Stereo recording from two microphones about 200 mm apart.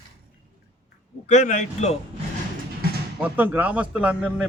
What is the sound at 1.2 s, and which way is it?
Speech, 35° left (ahead or behind).